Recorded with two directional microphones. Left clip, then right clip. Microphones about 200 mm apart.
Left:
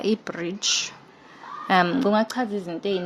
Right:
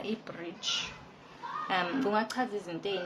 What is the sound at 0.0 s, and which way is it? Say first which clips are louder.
A woman's voice: left 12 dB; 50° left (ahead or behind).